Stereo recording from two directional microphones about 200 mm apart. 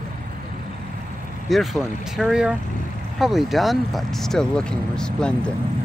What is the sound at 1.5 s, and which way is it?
Speech, centre (ahead or behind).